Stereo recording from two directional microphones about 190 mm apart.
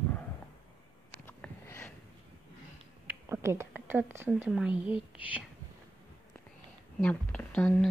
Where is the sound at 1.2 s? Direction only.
10° left (ahead or behind).